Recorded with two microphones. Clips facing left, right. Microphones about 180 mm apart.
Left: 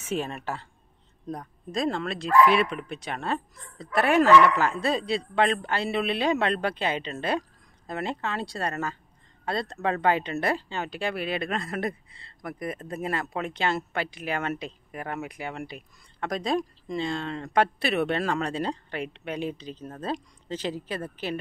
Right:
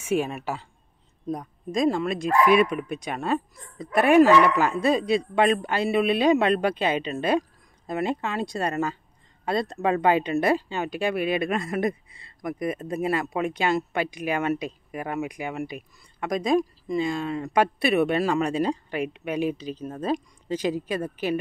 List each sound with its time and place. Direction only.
0.0 s speech: 10° right (ahead or behind)